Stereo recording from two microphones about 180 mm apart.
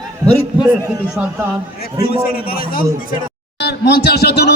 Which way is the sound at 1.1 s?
10° right (ahead or behind).